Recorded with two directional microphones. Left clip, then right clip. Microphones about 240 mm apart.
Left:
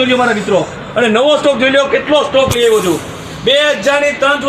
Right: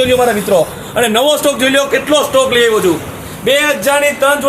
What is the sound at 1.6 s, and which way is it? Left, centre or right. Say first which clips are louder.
Speech: right 1 dB; right.